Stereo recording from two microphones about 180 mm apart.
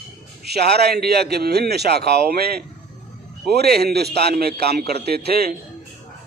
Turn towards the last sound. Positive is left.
turn(degrees=-60)  # may be behind; listen again after turning